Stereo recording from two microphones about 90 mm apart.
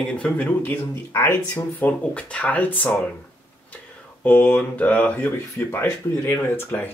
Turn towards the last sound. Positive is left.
turn(degrees=25)  # may be behind; listen again after turning